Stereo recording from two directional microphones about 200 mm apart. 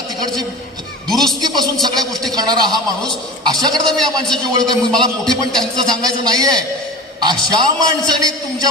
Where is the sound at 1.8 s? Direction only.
20° right (ahead or behind).